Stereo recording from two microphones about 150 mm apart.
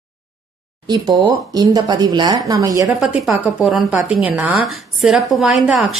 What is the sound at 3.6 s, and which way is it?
A woman's voice, 10° right (ahead or behind).